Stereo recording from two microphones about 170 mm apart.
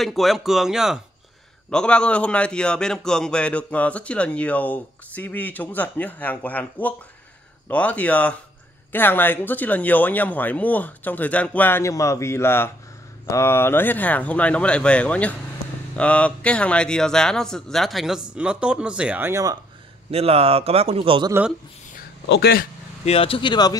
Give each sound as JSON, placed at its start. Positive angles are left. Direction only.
{"t": 0.0, "sound": "a man's voice", "side_deg": 0}
{"t": 20.1, "sound": "speech", "side_deg": -35}
{"t": 21.3, "sound": "speech", "side_deg": -10}
{"t": 22.3, "sound": "speech", "side_deg": 70}
{"t": 23.0, "sound": "speech", "side_deg": 35}